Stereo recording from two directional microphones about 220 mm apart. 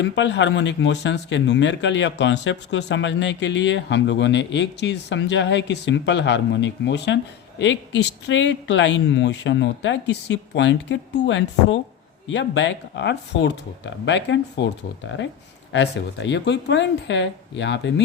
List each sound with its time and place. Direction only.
0.0 s speech: 55° left (ahead or behind)